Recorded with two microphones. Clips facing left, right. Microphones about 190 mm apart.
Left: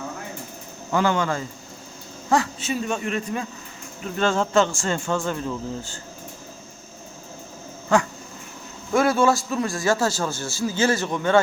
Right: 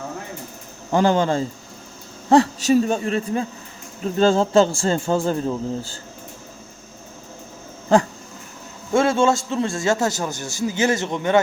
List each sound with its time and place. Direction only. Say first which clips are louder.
0.9 s a man's voice: right 4 dB; 35° right (ahead or behind)
8.9 s a man's voice: right 2 dB; 25° right (ahead or behind)